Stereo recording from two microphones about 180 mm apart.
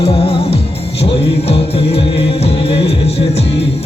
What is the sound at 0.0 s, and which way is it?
Music, 30° left (ahead or behind).